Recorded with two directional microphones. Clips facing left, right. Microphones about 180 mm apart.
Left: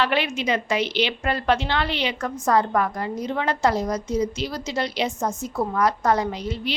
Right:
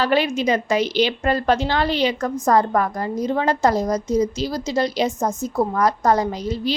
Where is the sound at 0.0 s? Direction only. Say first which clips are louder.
Right 4 dB; 40° right (ahead or behind).